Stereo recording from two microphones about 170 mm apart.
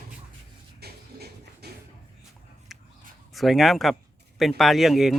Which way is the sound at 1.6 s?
75° right (ahead or behind).